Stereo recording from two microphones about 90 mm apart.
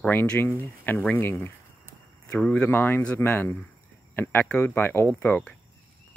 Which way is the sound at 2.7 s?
25° left (ahead or behind).